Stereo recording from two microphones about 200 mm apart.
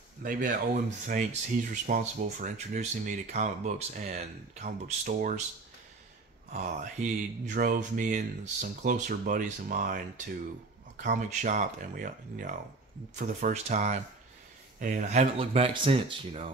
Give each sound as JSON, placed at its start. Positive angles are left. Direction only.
{"t": 0.2, "sound": "speech", "side_deg": -45}
{"t": 6.5, "sound": "speech", "side_deg": -35}
{"t": 15.3, "sound": "speech", "side_deg": -30}